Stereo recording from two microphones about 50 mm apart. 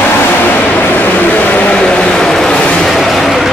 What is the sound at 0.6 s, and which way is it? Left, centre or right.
Vehicle, left.